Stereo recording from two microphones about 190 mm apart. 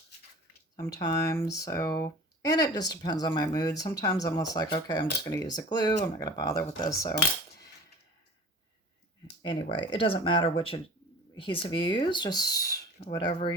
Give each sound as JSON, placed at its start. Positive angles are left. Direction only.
{"t": 0.8, "sound": "speech", "side_deg": 20}
{"t": 9.5, "sound": "speech", "side_deg": 25}